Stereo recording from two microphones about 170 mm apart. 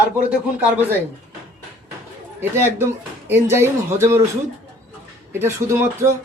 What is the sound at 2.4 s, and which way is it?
A man's voice, 15° right (ahead or behind).